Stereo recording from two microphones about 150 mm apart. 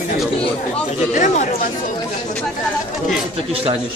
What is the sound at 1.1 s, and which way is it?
Speech, 60° left (ahead or behind).